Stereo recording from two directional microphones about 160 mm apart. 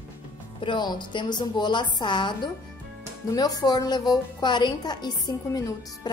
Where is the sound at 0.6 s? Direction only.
30° left (ahead or behind).